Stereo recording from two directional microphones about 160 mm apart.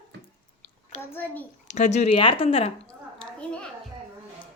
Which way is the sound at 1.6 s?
50° left (ahead or behind).